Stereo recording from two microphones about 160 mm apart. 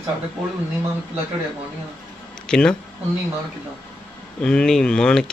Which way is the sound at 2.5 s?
5° left (ahead or behind).